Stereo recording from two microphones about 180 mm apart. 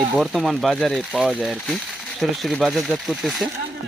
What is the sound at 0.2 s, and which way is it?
Speech, centre (ahead or behind).